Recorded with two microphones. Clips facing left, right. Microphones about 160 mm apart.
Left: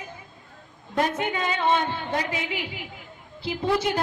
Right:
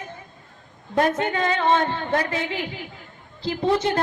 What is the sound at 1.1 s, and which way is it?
A woman's voice, 15° left (ahead or behind).